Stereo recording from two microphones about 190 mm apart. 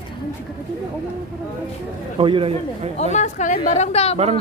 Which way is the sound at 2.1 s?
30° right (ahead or behind).